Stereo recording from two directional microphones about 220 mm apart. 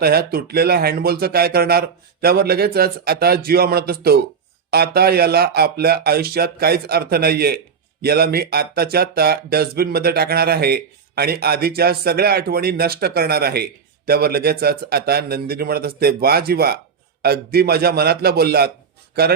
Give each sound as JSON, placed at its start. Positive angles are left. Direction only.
{"t": 0.0, "sound": "speech", "side_deg": -45}